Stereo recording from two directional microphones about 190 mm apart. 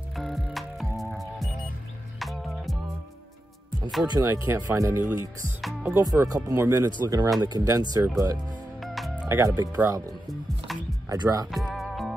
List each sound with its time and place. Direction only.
0.1 s music: centre (ahead or behind)
4.1 s speech: 15° right (ahead or behind)
5.6 s speech: centre (ahead or behind)
6.0 s speech: 20° right (ahead or behind)
7.0 s speech: 25° right (ahead or behind)
8.8 s music: centre (ahead or behind)
9.4 s speech: 15° right (ahead or behind)
10.7 s music: centre (ahead or behind)
11.1 s speech: 20° right (ahead or behind)
11.5 s music: centre (ahead or behind)